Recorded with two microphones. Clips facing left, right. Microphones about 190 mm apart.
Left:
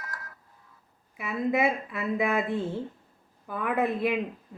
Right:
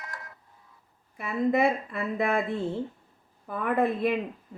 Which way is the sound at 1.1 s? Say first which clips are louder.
Right 2 dB; 5° left (ahead or behind).